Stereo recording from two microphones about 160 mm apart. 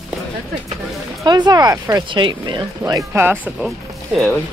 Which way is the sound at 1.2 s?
25° right (ahead or behind).